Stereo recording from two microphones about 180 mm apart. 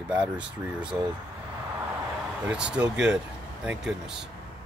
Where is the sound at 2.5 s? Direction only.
5° right (ahead or behind).